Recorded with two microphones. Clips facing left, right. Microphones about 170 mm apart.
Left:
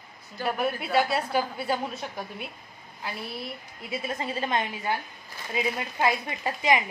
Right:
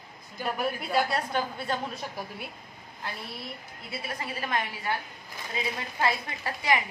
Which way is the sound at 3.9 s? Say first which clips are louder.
Left 5 dB; 25° left (ahead or behind).